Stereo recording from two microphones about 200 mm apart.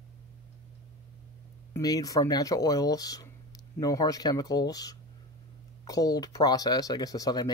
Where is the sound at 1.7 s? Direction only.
20° left (ahead or behind).